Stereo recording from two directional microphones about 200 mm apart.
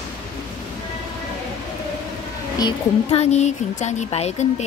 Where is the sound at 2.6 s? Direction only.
25° left (ahead or behind).